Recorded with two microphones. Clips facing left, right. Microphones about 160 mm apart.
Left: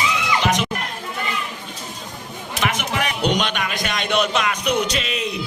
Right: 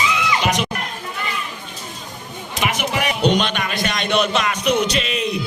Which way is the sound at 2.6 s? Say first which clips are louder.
Right 1 dB; 5° right (ahead or behind).